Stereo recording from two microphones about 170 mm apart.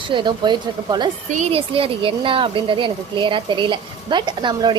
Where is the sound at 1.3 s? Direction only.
40° right (ahead or behind).